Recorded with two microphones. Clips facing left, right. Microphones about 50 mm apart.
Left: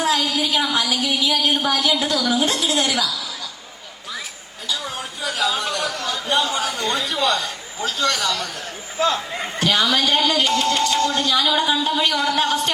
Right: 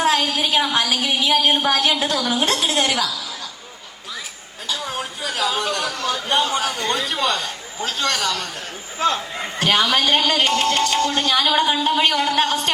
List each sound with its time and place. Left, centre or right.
0.0 s a woman's voice: right
4.7 s a sound: right
6.1 s a woman's voice: right
9.6 s a woman's voice: right